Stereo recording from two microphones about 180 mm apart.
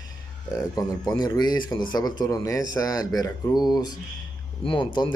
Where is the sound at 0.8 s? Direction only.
20° left (ahead or behind).